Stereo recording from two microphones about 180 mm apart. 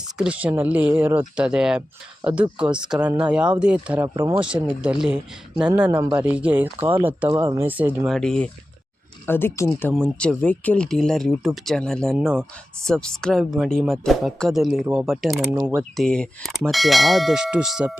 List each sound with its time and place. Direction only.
0.2 s speech: 5° right (ahead or behind)
4.0 s speech: 15° right (ahead or behind)
4.4 s speech: 5° right (ahead or behind)
8.1 s speech: 5° left (ahead or behind)
16.0 s speech: 5° left (ahead or behind)